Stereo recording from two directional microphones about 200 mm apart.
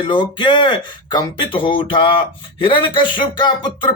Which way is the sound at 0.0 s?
25° left (ahead or behind).